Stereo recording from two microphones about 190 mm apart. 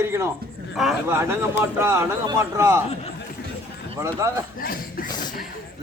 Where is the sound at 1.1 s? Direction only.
15° right (ahead or behind).